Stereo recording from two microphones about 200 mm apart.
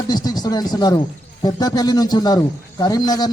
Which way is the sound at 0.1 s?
20° left (ahead or behind).